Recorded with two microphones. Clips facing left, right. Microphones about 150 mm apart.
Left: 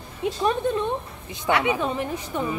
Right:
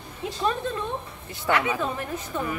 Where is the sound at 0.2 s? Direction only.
20° left (ahead or behind).